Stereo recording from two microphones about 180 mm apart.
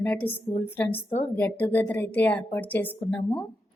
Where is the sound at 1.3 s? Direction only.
10° left (ahead or behind).